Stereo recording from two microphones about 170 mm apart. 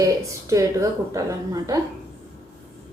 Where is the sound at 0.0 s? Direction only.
20° right (ahead or behind).